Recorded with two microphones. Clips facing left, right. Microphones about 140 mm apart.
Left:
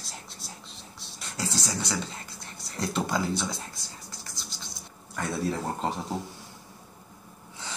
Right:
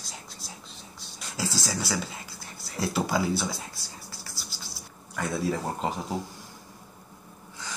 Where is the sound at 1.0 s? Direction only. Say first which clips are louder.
Right 2 dB; centre (ahead or behind).